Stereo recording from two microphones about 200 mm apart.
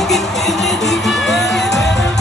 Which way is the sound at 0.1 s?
Centre (ahead or behind).